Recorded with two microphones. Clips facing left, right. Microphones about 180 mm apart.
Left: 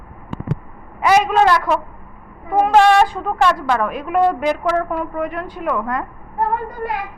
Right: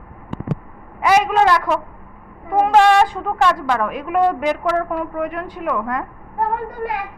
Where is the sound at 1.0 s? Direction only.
15° right (ahead or behind).